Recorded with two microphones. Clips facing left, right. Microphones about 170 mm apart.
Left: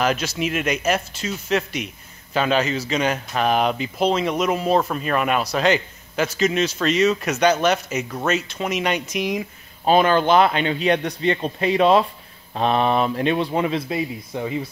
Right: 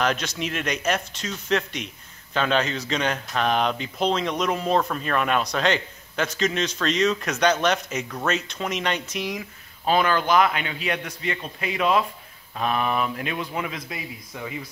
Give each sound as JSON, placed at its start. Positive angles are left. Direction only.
{"t": 0.0, "sound": "speech", "side_deg": 5}